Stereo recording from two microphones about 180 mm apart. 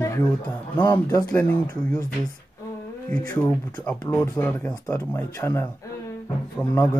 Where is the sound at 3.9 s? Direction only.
10° left (ahead or behind).